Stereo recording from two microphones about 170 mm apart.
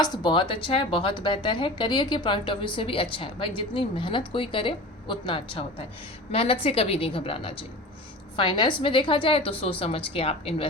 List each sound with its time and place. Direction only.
0.0 s a woman's voice: 25° left (ahead or behind)